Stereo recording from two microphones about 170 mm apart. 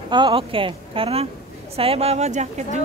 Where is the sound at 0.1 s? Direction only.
30° right (ahead or behind).